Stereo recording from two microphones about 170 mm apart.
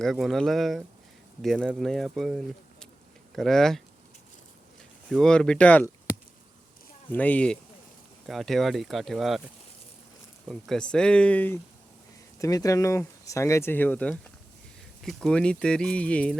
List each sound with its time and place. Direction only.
0.0 s speech: centre (ahead or behind)
5.0 s speech: centre (ahead or behind)
7.1 s speech: 10° left (ahead or behind)
10.5 s speech: 5° left (ahead or behind)